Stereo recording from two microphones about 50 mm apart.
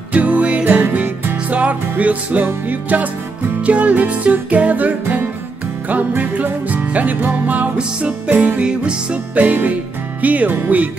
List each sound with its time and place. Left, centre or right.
0.1 s music: right
0.7 s music: right
7.2 s speech: right
7.7 s music: right
10.2 s speech: right